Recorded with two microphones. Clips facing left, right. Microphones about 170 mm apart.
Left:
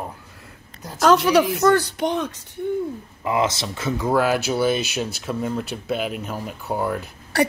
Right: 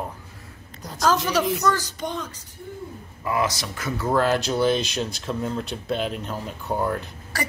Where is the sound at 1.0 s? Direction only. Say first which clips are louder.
Left 6 dB; 65° left (ahead or behind).